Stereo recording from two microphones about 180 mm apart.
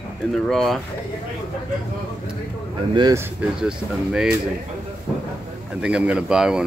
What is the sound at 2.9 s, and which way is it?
Speech, 20° right (ahead or behind).